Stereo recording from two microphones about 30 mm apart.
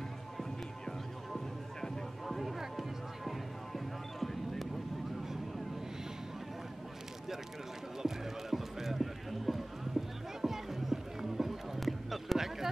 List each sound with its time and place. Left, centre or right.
2.2 s music: centre
8.0 s clip-clop: centre
10.4 s music: centre
11.8 s a sound: centre